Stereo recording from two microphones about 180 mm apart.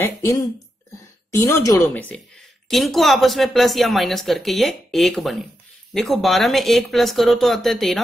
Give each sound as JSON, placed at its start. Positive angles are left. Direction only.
{"t": 0.0, "sound": "a woman's voice", "side_deg": 15}